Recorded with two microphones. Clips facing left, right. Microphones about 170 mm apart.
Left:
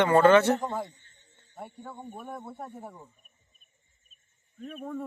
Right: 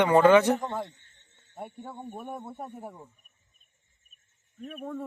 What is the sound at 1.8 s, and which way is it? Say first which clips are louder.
Speech: right 1 dB; 25° right (ahead or behind).